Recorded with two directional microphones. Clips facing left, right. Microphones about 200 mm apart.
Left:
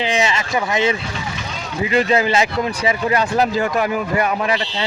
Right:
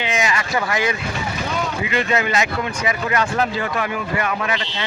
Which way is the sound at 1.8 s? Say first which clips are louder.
Left 7 dB; 35° left (ahead or behind).